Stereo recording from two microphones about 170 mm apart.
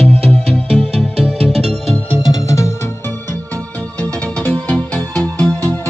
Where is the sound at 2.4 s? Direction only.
20° left (ahead or behind).